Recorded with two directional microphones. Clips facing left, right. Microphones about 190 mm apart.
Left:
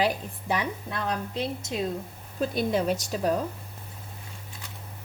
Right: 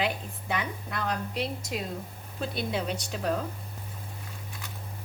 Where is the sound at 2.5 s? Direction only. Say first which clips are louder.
Left 6 dB; 45° left (ahead or behind).